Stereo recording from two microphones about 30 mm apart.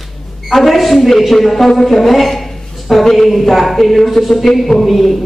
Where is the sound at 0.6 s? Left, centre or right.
Centre.